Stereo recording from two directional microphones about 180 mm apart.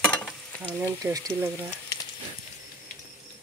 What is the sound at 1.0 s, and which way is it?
Speech, 20° right (ahead or behind).